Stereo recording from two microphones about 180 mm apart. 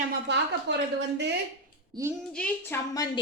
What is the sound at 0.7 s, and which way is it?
Speech, 75° right (ahead or behind).